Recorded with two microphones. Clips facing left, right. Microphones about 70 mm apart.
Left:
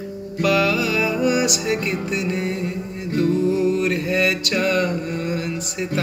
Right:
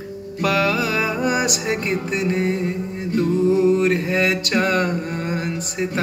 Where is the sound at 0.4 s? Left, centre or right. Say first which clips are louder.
Left 1 dB; right.